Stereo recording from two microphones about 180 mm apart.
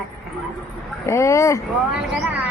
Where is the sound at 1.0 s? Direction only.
15° left (ahead or behind).